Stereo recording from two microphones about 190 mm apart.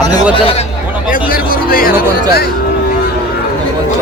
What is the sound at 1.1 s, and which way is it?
Speech, 50° left (ahead or behind).